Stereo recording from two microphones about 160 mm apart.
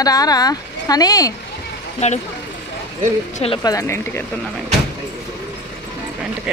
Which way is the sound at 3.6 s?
20° left (ahead or behind).